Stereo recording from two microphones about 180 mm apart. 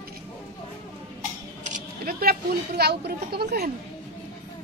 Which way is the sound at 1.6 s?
50° right (ahead or behind).